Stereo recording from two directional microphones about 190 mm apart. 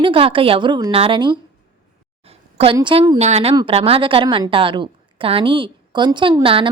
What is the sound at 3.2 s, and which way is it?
A woman's voice, 35° right (ahead or behind).